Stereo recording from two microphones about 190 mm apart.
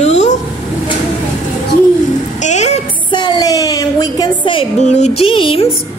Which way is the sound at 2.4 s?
35° left (ahead or behind).